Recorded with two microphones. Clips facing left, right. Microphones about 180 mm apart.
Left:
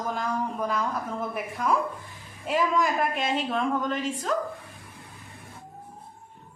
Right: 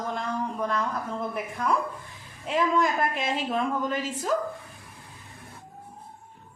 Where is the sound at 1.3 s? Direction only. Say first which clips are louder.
Left 2 dB; 5° left (ahead or behind).